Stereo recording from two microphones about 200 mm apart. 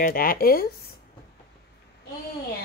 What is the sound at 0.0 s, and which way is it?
Speech, 45° left (ahead or behind).